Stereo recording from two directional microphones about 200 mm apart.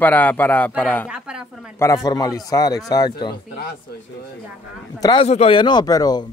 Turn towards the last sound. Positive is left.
turn(degrees=20)  # may be behind; listen again after turning